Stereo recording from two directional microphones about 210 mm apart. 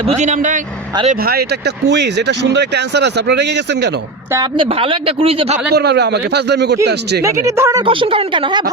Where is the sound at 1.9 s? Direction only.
55° right (ahead or behind).